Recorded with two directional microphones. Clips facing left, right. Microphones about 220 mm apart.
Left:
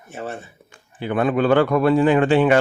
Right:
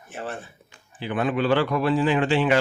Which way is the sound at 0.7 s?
55° left (ahead or behind).